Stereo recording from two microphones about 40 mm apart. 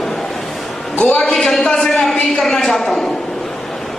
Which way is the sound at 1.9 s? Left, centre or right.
Centre.